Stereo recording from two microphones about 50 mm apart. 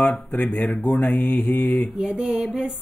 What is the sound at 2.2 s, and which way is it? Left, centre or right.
Music, centre.